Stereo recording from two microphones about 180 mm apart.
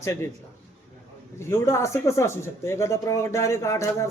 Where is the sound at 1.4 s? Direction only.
15° left (ahead or behind).